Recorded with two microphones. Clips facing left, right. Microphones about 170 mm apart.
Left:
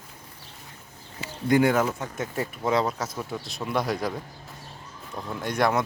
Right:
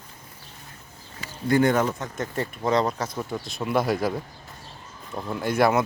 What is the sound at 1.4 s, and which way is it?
Speech, 15° left (ahead or behind).